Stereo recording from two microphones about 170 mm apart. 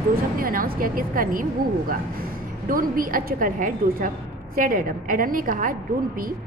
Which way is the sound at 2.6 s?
55° right (ahead or behind).